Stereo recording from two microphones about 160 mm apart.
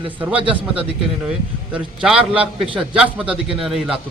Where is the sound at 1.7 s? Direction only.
5° right (ahead or behind).